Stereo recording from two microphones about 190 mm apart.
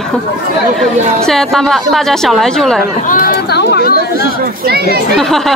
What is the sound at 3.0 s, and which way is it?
Chatter, 50° left (ahead or behind).